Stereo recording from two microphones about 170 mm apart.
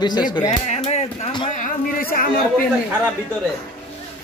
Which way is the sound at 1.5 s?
55° left (ahead or behind).